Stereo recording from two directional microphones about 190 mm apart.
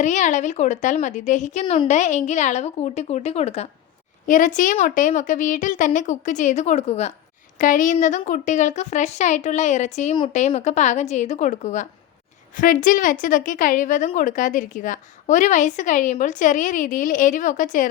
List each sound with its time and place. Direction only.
0.0 s a woman's voice: 40° left (ahead or behind)